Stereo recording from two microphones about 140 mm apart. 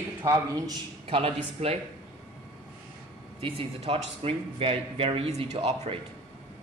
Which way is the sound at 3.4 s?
40° right (ahead or behind).